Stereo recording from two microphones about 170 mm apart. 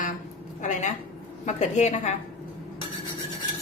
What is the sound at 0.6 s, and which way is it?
A woman's voice, 45° left (ahead or behind).